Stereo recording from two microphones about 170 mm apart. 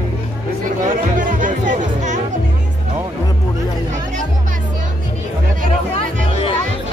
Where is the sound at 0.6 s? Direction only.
50° right (ahead or behind).